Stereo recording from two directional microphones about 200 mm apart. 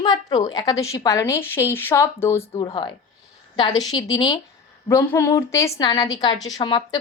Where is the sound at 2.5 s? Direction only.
25° left (ahead or behind).